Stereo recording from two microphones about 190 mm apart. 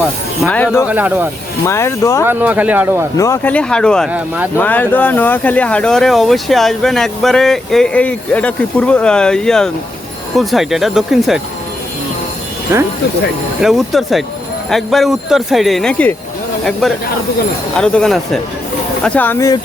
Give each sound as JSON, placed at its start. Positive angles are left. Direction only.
{"t": 0.4, "sound": "speech", "side_deg": 10}
{"t": 0.9, "sound": "speech", "side_deg": -10}
{"t": 1.6, "sound": "speech", "side_deg": 15}
{"t": 2.2, "sound": "speech", "side_deg": -10}
{"t": 3.2, "sound": "speech", "side_deg": 15}
{"t": 12.7, "sound": "speech", "side_deg": -15}
{"t": 13.6, "sound": "speech", "side_deg": 0}